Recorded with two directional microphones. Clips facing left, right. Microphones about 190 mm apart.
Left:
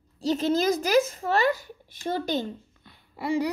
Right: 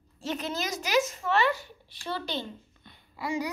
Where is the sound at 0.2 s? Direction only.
35° left (ahead or behind).